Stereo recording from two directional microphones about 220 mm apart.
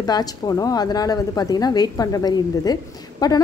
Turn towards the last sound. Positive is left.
turn(degrees=20)  # may be behind; listen again after turning